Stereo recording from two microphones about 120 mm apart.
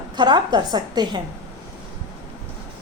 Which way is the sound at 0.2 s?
35° right (ahead or behind).